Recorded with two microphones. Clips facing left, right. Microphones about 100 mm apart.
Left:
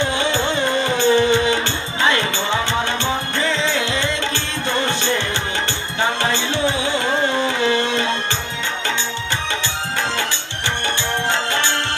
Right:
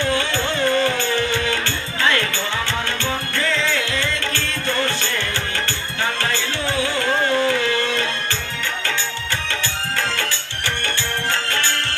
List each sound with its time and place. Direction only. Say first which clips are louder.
0.0 s music: left 2 dB; 20° left (ahead or behind)
11.3 s music: left 3 dB; 20° left (ahead or behind)